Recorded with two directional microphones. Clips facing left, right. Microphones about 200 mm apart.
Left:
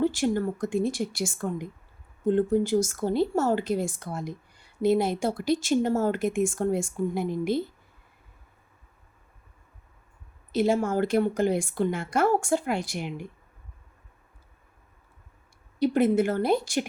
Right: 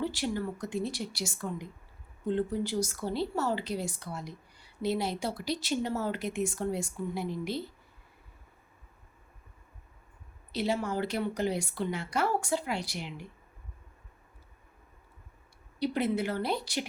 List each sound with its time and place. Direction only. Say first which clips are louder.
0.0 s speech: left 7 dB; 50° left (ahead or behind)
10.5 s speech: left 7 dB; 50° left (ahead or behind)
15.8 s speech: left 8 dB; 50° left (ahead or behind)